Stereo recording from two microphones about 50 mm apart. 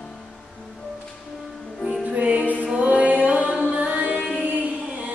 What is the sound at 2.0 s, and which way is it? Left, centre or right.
Music, right.